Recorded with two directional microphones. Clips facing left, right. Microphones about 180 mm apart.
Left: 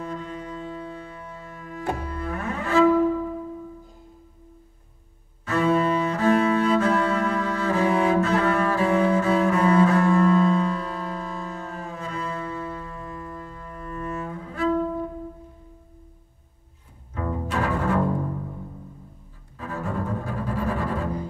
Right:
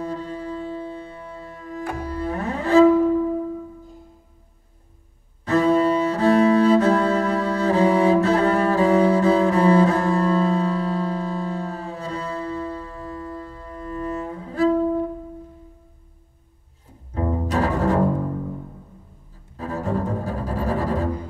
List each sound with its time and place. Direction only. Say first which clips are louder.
0.0 s music: right 4 dB; 35° right (ahead or behind)
2.0 s cello: right 4 dB; 35° right (ahead or behind)
5.4 s cello: right 4 dB; 35° right (ahead or behind)
17.1 s cello: right 4 dB; 30° right (ahead or behind)
19.5 s cello: right 5 dB; 35° right (ahead or behind)